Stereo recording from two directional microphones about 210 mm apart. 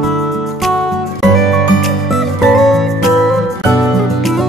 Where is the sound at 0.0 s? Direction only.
Centre (ahead or behind).